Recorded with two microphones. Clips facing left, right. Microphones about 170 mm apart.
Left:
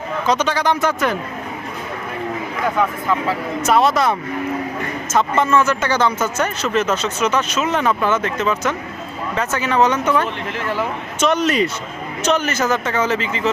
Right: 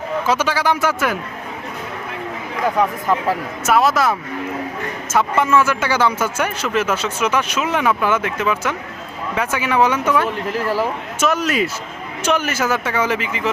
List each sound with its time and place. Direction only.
0.3 s a man's voice: 10° right (ahead or behind)
3.7 s a man's voice: centre (ahead or behind)
10.5 s speech: 35° right (ahead or behind)
11.2 s a man's voice: 5° right (ahead or behind)